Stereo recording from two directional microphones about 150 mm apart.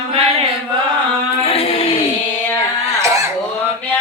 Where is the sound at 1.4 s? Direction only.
40° left (ahead or behind).